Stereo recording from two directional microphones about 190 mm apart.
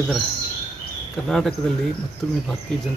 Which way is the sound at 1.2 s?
Centre (ahead or behind).